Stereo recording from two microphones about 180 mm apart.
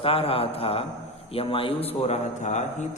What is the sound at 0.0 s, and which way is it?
Speech, 30° left (ahead or behind).